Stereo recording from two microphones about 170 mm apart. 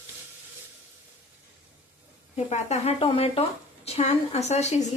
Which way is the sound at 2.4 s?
40° left (ahead or behind).